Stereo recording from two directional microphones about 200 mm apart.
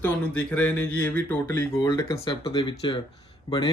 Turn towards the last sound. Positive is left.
turn(degrees=20)  # may be behind; listen again after turning